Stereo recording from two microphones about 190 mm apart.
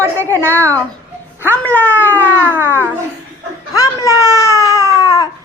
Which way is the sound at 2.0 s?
10° right (ahead or behind).